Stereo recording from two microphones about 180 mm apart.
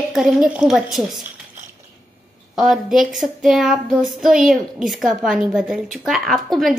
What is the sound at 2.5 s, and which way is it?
Speech, centre (ahead or behind).